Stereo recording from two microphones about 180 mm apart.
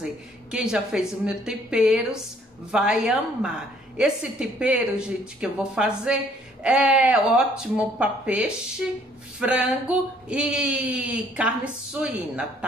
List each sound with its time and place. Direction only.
0.0 s a woman's voice: 5° right (ahead or behind)